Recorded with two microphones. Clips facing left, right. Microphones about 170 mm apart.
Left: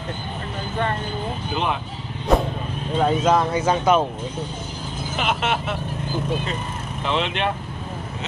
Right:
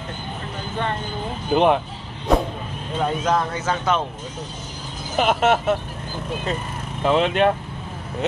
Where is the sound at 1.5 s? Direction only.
50° right (ahead or behind).